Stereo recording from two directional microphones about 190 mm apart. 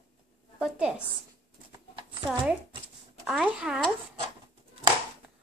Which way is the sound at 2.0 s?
25° right (ahead or behind).